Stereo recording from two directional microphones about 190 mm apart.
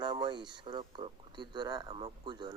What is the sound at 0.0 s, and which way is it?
Speech, 20° right (ahead or behind).